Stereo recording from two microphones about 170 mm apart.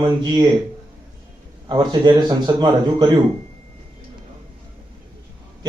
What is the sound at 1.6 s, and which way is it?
A man's voice, 25° right (ahead or behind).